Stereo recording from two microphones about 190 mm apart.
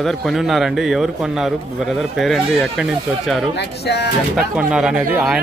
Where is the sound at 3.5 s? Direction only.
60° left (ahead or behind).